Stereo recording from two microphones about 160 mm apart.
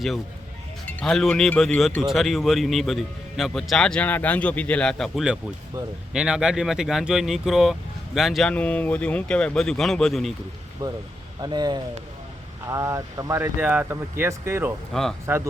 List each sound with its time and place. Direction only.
0.9 s speech: 5° left (ahead or behind)
10.8 s speech: 25° right (ahead or behind)
14.9 s speech: 5° left (ahead or behind)
15.3 s speech: 10° right (ahead or behind)